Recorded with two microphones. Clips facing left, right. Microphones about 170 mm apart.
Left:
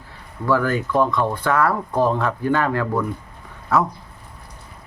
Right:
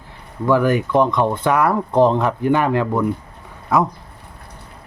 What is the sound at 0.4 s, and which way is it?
Speech, 15° right (ahead or behind).